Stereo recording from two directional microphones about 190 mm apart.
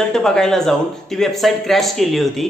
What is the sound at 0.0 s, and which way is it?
A woman's voice, 5° left (ahead or behind).